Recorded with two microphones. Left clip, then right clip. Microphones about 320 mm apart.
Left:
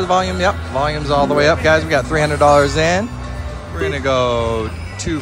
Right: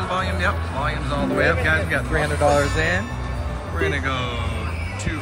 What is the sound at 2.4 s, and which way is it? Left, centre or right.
Speech, right.